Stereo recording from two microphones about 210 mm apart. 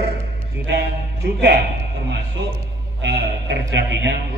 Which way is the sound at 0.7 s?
50° right (ahead or behind).